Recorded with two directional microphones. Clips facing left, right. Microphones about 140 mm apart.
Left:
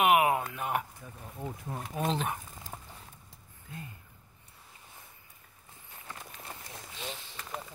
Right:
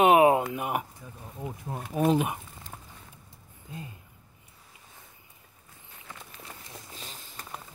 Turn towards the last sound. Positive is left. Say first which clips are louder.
# left 4 dB
turn(degrees=-40)  # may be behind; listen again after turning